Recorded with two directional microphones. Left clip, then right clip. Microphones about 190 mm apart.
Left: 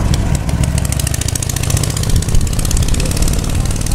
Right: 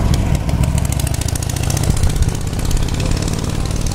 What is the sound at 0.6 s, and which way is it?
Vehicle, 15° left (ahead or behind).